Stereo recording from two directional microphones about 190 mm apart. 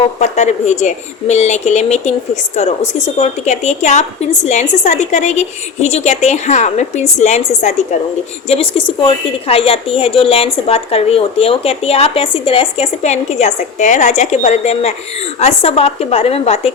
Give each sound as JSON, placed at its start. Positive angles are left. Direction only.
{"t": 0.2, "sound": "a woman's voice", "side_deg": 35}